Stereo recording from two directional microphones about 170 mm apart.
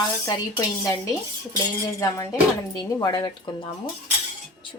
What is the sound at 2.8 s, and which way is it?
Speech, 20° left (ahead or behind).